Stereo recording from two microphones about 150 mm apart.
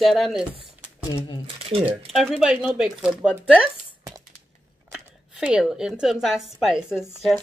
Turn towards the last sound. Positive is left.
turn(degrees=0)  # may be behind; listen again after turning